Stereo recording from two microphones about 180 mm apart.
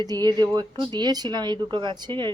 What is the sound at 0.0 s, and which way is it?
Speech, 20° right (ahead or behind).